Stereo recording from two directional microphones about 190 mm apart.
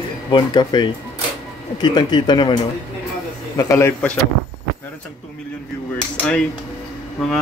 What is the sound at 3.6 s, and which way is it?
Speech, 15° left (ahead or behind).